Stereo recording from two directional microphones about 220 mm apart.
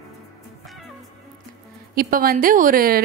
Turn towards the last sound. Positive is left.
turn(degrees=-40)  # may be behind; listen again after turning